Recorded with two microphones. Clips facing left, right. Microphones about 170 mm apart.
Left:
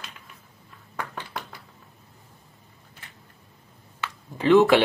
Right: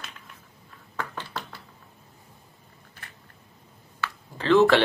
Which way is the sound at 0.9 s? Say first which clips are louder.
Even; 15° left (ahead or behind).